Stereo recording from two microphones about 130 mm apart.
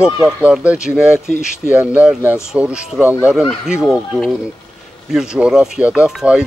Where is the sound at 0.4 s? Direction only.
10° right (ahead or behind).